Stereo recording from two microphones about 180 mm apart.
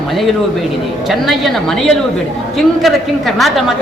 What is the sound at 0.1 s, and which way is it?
A woman's voice, centre (ahead or behind).